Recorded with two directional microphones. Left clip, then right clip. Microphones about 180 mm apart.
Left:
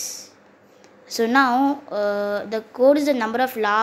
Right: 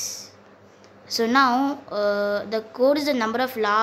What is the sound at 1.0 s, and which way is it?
A woman's voice, 20° left (ahead or behind).